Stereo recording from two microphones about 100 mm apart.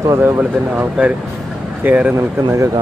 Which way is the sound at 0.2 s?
10° right (ahead or behind).